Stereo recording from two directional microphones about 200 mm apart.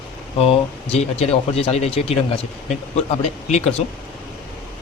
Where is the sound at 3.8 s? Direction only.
35° left (ahead or behind).